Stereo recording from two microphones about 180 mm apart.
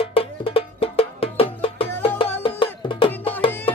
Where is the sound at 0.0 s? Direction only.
30° left (ahead or behind).